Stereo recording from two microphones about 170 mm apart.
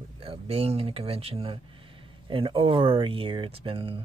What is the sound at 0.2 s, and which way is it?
Speech, 35° right (ahead or behind).